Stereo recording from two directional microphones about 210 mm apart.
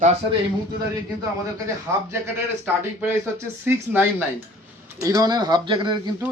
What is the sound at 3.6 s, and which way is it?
Speech, 10° right (ahead or behind).